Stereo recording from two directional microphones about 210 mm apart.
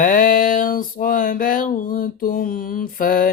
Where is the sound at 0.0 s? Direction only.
40° left (ahead or behind).